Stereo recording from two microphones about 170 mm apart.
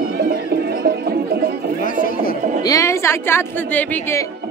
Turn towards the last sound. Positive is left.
turn(degrees=10)  # may be behind; listen again after turning